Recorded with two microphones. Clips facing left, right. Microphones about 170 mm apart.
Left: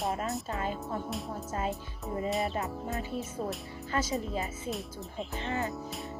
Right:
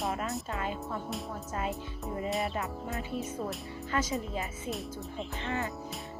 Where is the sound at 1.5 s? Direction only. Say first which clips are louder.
Left 1 dB; 30° left (ahead or behind).